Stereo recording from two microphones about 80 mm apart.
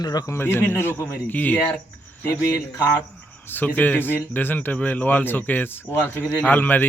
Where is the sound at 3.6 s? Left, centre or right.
Left.